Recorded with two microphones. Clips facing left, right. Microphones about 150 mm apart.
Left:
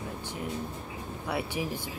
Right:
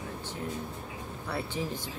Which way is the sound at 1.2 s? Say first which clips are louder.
Left 2 dB; 15° left (ahead or behind).